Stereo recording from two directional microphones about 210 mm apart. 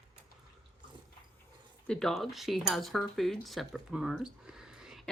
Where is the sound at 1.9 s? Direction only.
Centre (ahead or behind).